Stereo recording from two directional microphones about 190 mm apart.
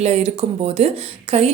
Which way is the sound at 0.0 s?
35° right (ahead or behind).